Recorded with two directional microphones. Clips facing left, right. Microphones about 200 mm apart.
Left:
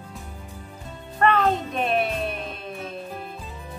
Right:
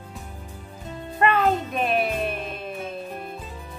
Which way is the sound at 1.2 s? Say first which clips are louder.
Even; 5° right (ahead or behind).